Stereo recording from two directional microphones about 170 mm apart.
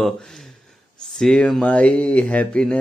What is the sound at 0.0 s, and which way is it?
Speech, centre (ahead or behind).